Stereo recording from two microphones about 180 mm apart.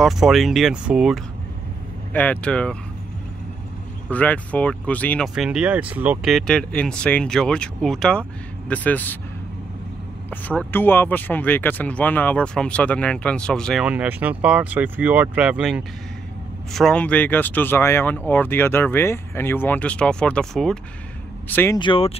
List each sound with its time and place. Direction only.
0.0 s speech: centre (ahead or behind)
2.1 s speech: 5° left (ahead or behind)
4.1 s speech: 10° left (ahead or behind)
5.3 s speech: 5° right (ahead or behind)
10.3 s speech: 10° left (ahead or behind)
13.8 s speech: 10° right (ahead or behind); by 21.7 s 10° left (ahead or behind)
21.7 s speech: 30° left (ahead or behind)